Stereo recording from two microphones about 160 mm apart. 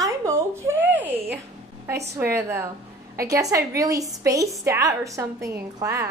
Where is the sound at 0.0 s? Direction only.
20° right (ahead or behind).